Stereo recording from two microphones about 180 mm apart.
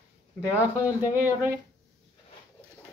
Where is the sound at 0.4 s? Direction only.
15° left (ahead or behind).